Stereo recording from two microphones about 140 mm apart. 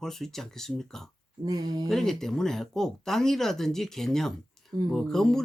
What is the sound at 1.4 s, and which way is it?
Speech, 25° right (ahead or behind).